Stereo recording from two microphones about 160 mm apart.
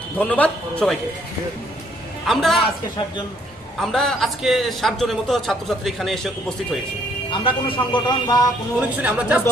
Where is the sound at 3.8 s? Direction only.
Centre (ahead or behind).